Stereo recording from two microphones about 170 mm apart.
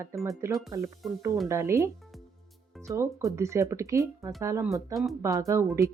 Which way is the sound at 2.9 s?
20° right (ahead or behind).